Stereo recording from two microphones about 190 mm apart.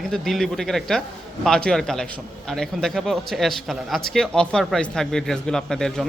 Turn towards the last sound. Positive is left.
turn(degrees=0)  # may be behind; listen again after turning